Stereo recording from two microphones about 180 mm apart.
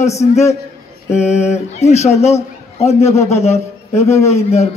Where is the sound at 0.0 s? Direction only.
40° left (ahead or behind).